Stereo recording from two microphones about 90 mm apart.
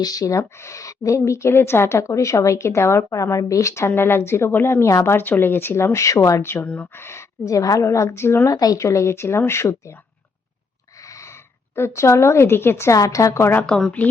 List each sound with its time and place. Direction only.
0.0 s a woman's voice: 45° left (ahead or behind)
8.5 s speech: 40° left (ahead or behind)
11.7 s speech: 30° left (ahead or behind)
13.6 s speech: 5° left (ahead or behind)